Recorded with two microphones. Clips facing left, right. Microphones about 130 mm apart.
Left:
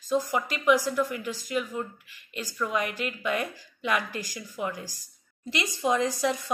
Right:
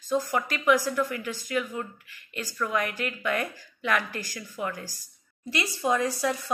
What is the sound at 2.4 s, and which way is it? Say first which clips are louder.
A woman's voice: even; 10° left (ahead or behind).